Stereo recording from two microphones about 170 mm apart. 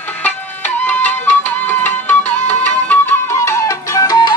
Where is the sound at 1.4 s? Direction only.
10° left (ahead or behind).